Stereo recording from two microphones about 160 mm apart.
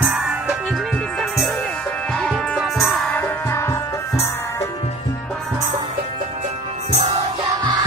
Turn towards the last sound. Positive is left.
turn(degrees=-40)  # may be behind; listen again after turning